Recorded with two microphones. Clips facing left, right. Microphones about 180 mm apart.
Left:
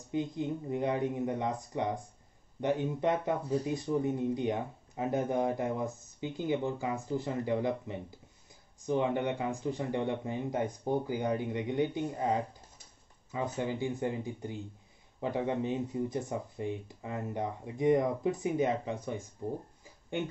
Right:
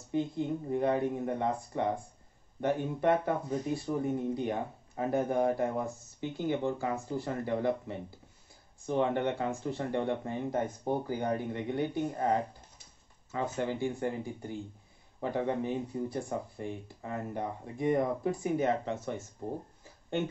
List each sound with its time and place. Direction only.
0.1 s speech: 15° left (ahead or behind)
8.8 s speech: 15° left (ahead or behind)